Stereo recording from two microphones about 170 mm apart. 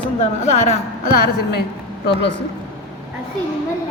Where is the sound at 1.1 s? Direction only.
65° left (ahead or behind).